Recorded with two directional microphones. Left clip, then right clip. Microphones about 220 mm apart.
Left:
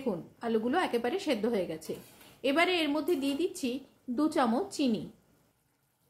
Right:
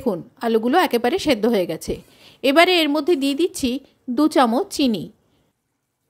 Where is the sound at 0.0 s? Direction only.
45° right (ahead or behind).